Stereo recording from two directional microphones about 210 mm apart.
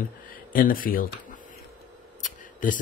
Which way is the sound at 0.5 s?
40° left (ahead or behind).